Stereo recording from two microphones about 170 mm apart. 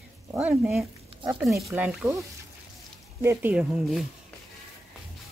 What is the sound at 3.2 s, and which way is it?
Speech, 15° right (ahead or behind).